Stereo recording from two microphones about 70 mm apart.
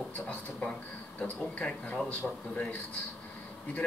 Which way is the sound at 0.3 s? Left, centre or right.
Centre.